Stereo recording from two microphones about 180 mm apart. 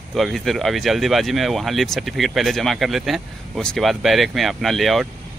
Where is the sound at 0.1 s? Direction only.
Centre (ahead or behind).